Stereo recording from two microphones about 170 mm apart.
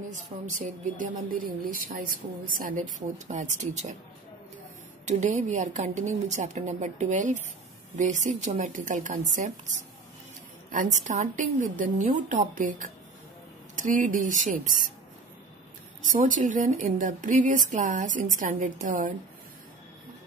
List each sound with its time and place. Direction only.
0.1 s a woman's voice: 50° right (ahead or behind)
5.0 s a woman's voice: 45° right (ahead or behind)
16.3 s a woman's voice: 50° right (ahead or behind)